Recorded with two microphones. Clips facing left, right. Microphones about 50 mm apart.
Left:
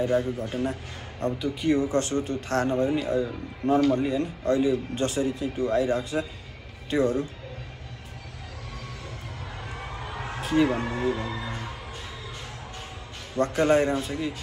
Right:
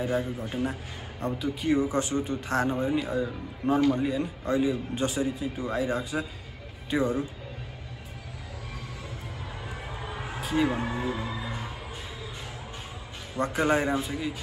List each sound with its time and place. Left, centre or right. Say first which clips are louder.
0.0 s a man's voice: left 4 dB; centre
9.9 s a sound: left 2 dB; centre
10.5 s speech: left 3 dB; centre
13.4 s a man's voice: left 4 dB; centre